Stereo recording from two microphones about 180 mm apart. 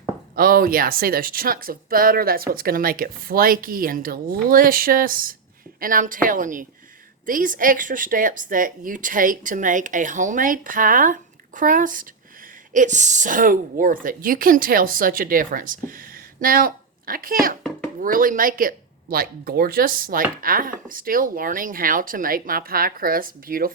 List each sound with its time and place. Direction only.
0.3 s speech: 55° right (ahead or behind)